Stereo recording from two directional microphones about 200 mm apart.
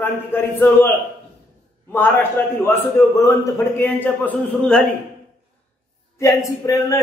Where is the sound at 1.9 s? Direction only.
10° left (ahead or behind).